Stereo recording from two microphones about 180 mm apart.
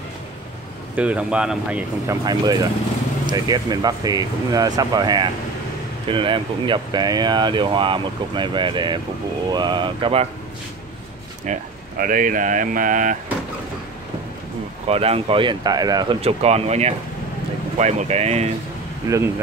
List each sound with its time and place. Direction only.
0.9 s speech: 5° right (ahead or behind)
2.0 s speech: 20° right (ahead or behind)
11.4 s speech: 45° right (ahead or behind)
14.9 s speech: 35° right (ahead or behind)
16.2 s speech: 35° right (ahead or behind)